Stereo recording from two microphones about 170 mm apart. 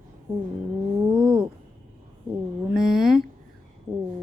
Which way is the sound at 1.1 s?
5° right (ahead or behind).